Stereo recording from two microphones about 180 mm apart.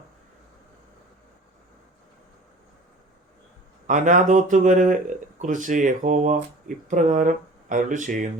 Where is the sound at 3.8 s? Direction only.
45° right (ahead or behind).